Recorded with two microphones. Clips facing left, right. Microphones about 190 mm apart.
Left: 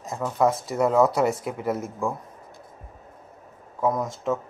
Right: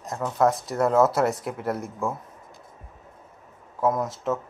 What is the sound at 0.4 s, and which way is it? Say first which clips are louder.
Speech: even; centre (ahead or behind).